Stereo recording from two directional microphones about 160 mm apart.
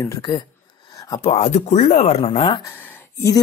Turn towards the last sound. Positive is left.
turn(degrees=20)  # may be behind; listen again after turning